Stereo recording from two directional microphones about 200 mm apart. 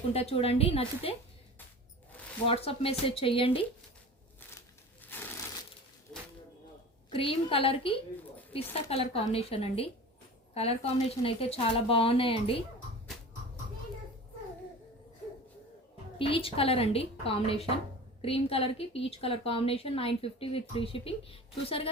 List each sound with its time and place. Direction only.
0.1 s a woman's voice: 30° left (ahead or behind)
2.5 s a woman's voice: 30° left (ahead or behind)
5.1 s crushing: 10° left (ahead or behind)
6.1 s a sound: centre (ahead or behind)
7.1 s a woman's voice: 25° left (ahead or behind)
16.1 s a woman's voice: 25° left (ahead or behind)